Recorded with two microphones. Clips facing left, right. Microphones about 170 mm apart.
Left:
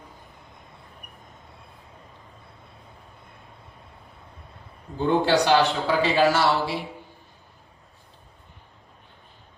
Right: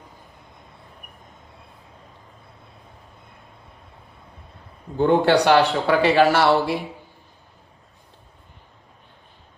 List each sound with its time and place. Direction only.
4.9 s speech: 60° right (ahead or behind)